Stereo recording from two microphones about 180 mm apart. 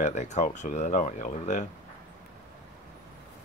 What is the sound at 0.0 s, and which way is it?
Speech, 40° left (ahead or behind).